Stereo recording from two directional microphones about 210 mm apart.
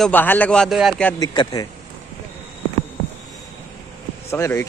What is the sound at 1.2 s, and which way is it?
Speech, 20° left (ahead or behind).